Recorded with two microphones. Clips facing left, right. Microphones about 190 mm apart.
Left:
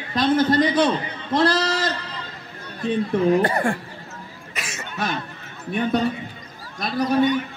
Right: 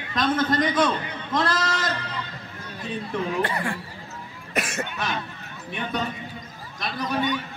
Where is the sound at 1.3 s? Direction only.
30° left (ahead or behind).